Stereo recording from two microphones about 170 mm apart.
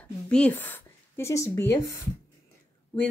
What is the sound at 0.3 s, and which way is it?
Speech, 10° left (ahead or behind).